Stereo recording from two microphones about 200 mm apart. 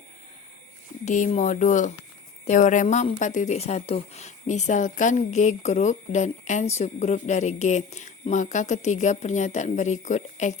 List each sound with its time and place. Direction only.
1.0 s speech: 35° left (ahead or behind)